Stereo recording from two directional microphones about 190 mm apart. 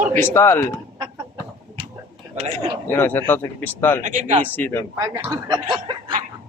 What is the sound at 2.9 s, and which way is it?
Speech, 10° left (ahead or behind).